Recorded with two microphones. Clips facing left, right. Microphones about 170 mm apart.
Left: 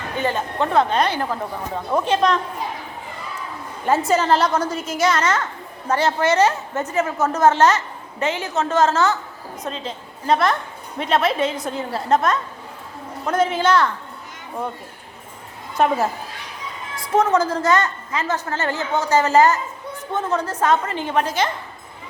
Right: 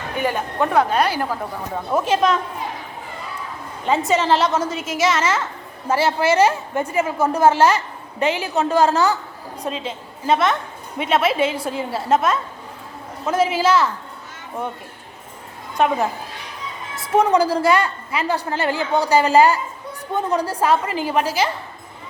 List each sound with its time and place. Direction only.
0.2 s a woman's voice: 10° right (ahead or behind)
3.8 s a woman's voice: centre (ahead or behind)
15.8 s a woman's voice: centre (ahead or behind)
16.9 s a sound: 10° right (ahead or behind)
17.5 s a woman's voice: 10° right (ahead or behind)